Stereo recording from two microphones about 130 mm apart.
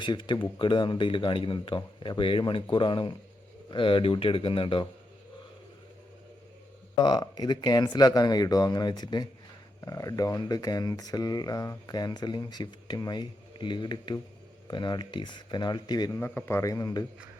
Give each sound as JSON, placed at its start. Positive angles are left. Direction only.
{"t": 0.0, "sound": "speech", "side_deg": 35}
{"t": 6.9, "sound": "speech", "side_deg": 30}
{"t": 16.1, "sound": "speech", "side_deg": 20}